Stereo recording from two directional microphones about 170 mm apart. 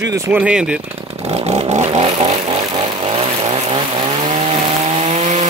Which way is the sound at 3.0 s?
35° right (ahead or behind).